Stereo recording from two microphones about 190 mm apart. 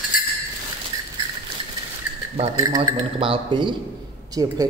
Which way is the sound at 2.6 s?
25° right (ahead or behind).